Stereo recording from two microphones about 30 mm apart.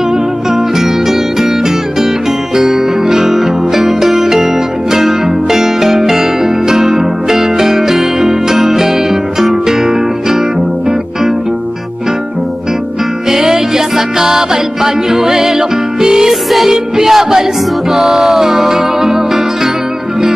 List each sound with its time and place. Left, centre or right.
0.1 s music: centre
2.5 s music: centre
13.3 s music: centre
16.3 s music: centre
16.7 s music: centre